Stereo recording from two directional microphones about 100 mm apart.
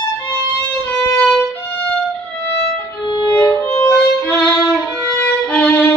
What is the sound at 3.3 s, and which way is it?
Violin, 20° left (ahead or behind).